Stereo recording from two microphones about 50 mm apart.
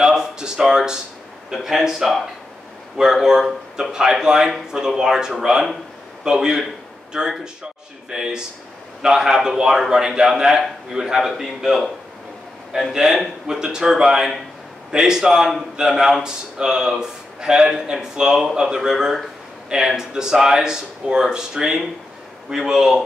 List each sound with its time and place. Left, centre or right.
0.0 s speech: centre
12.9 s speech: centre